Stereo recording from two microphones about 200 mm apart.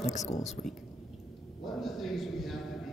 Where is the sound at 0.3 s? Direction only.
35° left (ahead or behind).